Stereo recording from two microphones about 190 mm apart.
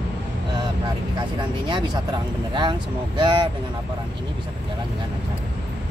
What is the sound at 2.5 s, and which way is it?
Speech, 25° right (ahead or behind).